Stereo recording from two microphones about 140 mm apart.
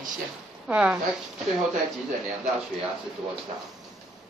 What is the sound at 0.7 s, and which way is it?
Speech, 10° right (ahead or behind).